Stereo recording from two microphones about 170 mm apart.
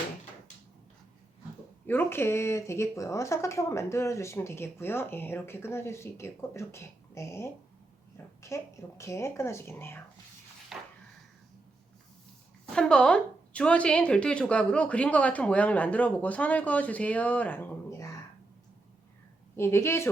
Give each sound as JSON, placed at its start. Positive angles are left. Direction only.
{"t": 1.9, "sound": "speech", "side_deg": 15}
{"t": 10.7, "sound": "chopping", "side_deg": 0}
{"t": 12.7, "sound": "speech", "side_deg": 5}
{"t": 19.5, "sound": "speech", "side_deg": 15}